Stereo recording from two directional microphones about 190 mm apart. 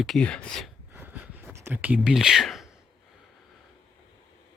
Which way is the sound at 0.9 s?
10° right (ahead or behind).